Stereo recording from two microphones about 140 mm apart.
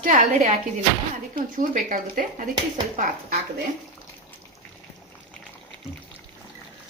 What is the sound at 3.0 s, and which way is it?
Speech, 80° right.